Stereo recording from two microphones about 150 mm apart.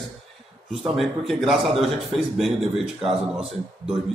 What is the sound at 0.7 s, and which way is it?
A man's voice, centre (ahead or behind).